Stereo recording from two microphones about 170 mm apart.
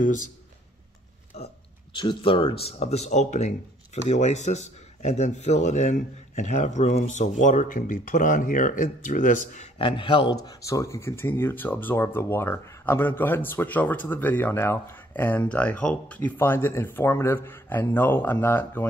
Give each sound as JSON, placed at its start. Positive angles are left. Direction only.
{"t": 0.0, "sound": "speech", "side_deg": 50}
{"t": 1.3, "sound": "burping", "side_deg": 40}
{"t": 2.0, "sound": "speech", "side_deg": 30}
{"t": 9.8, "sound": "speech", "side_deg": 30}